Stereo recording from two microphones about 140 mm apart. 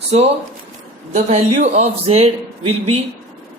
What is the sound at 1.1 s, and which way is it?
A man's voice, 55° right (ahead or behind).